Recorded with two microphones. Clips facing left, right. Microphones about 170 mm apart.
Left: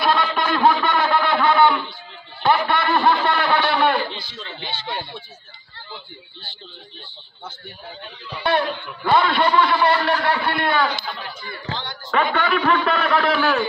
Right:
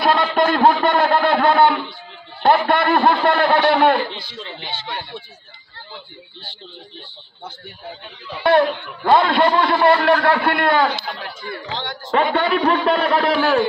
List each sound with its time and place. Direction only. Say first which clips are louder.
0.0 s a sound: right 4 dB; 50° right (ahead or behind)
4.4 s speech: right 1 dB; 15° right (ahead or behind)
8.5 s a man's voice: right 6 dB; 45° right (ahead or behind)
12.1 s a man's voice: right 3 dB; 30° right (ahead or behind)